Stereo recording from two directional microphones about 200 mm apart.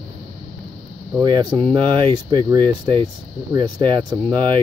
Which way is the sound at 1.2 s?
20° right (ahead or behind).